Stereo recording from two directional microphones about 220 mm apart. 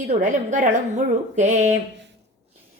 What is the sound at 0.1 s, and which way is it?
Speech, 35° right (ahead or behind).